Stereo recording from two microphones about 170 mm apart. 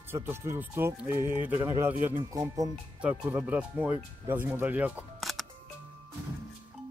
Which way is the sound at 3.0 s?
5° right (ahead or behind).